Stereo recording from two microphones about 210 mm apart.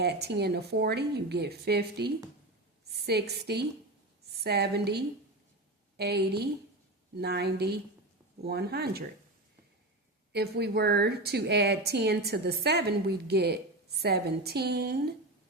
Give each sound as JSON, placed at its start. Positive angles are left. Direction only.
{"t": 0.0, "sound": "a woman's voice", "side_deg": -50}
{"t": 10.3, "sound": "a woman's voice", "side_deg": -50}